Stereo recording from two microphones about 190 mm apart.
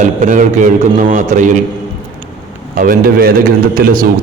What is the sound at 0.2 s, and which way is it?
A man's voice, 40° right (ahead or behind).